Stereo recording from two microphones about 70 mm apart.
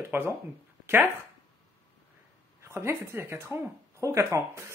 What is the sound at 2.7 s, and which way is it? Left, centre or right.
Speech, right.